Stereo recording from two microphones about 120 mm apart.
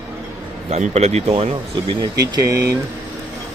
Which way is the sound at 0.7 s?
65° right (ahead or behind).